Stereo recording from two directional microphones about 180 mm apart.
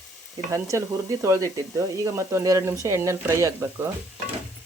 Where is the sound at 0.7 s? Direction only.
15° right (ahead or behind).